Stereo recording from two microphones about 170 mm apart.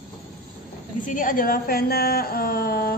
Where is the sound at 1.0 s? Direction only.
50° left (ahead or behind).